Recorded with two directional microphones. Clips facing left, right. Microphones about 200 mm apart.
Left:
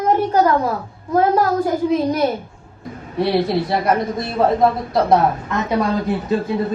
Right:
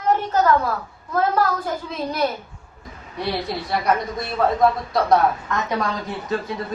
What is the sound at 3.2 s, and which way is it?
A woman's voice, 25° left (ahead or behind).